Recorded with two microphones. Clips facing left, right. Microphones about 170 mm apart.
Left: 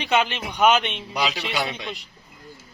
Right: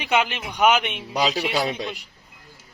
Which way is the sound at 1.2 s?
35° right (ahead or behind).